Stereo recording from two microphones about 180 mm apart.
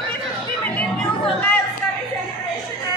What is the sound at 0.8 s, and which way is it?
Chatter, 10° left (ahead or behind).